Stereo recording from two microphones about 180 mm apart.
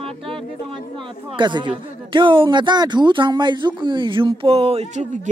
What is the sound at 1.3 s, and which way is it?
A man's voice, 25° right (ahead or behind).